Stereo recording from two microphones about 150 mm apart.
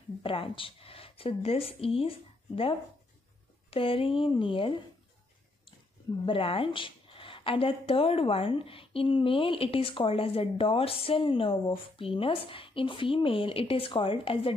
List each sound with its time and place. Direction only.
0.2 s a woman's voice: 35° left (ahead or behind)
3.7 s a woman's voice: 35° left (ahead or behind)
6.2 s a woman's voice: 35° left (ahead or behind)